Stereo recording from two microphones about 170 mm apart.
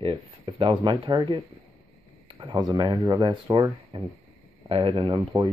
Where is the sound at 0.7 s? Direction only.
30° right (ahead or behind).